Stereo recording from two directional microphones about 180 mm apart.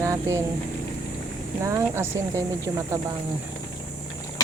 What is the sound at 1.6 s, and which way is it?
Speech, 15° right (ahead or behind).